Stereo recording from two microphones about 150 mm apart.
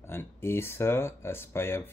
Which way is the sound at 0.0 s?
15° left (ahead or behind).